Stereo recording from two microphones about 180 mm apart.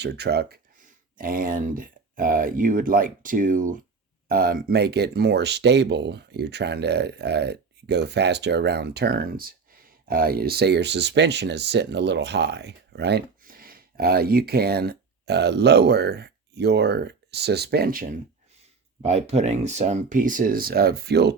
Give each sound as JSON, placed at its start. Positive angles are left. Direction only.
{"t": 0.0, "sound": "speech", "side_deg": -70}
{"t": 13.4, "sound": "speech", "side_deg": -55}
{"t": 19.0, "sound": "speech", "side_deg": -40}